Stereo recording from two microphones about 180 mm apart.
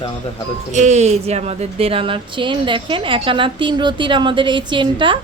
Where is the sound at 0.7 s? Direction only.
40° right (ahead or behind).